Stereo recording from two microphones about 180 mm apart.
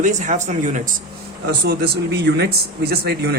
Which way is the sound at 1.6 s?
65° right (ahead or behind).